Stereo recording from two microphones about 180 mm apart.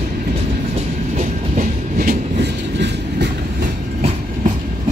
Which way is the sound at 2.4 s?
70° right (ahead or behind).